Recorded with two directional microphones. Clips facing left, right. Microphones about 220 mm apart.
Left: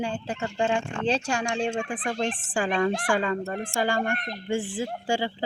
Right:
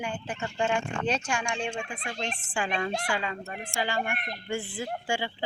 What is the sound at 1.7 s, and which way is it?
Speech, 50° left (ahead or behind).